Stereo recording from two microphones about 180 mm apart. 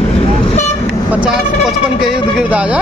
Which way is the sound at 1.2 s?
5° right (ahead or behind).